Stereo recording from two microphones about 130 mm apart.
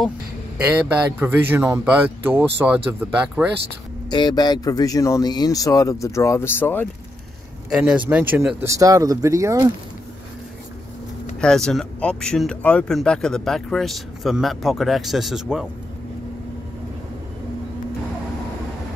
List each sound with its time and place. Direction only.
1.2 s speech: 15° right (ahead or behind)
4.1 s speech: 35° left (ahead or behind); by 6.9 s 15° left (ahead or behind)
7.7 s speech: 5° right (ahead or behind); by 9.7 s 25° right (ahead or behind)
11.4 s speech: 5° left (ahead or behind)